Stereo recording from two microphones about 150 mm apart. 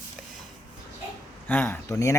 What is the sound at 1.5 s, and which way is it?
Speech, 10° left (ahead or behind).